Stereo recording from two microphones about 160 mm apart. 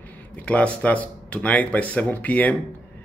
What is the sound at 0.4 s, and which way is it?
Speech, 10° left (ahead or behind).